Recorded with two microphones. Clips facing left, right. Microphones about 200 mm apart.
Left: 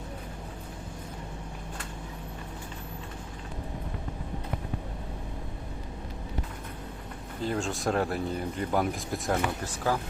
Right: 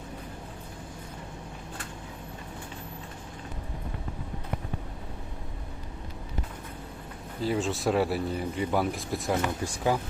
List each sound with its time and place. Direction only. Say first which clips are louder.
7.4 s speech: right 2 dB; 5° right (ahead or behind)
9.6 s speech: right 2 dB; 15° right (ahead or behind)